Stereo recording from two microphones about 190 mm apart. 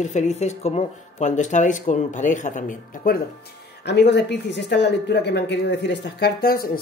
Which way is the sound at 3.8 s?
65° left (ahead or behind).